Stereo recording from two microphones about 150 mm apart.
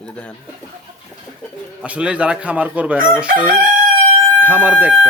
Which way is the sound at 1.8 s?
10° right (ahead or behind).